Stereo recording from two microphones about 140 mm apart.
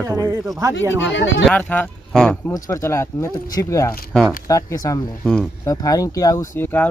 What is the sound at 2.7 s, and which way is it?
Speech, 20° left (ahead or behind).